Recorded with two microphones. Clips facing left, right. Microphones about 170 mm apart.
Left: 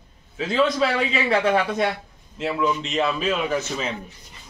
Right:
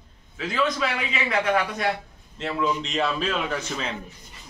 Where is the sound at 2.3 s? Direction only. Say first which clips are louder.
Left 2 dB; 5° left (ahead or behind).